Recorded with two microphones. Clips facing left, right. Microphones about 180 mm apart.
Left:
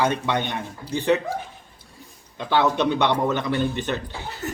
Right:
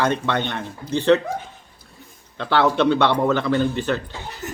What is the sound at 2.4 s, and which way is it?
A man's voice, 15° left (ahead or behind).